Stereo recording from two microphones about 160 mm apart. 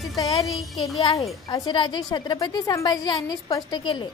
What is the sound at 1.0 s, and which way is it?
Speech, 40° left (ahead or behind).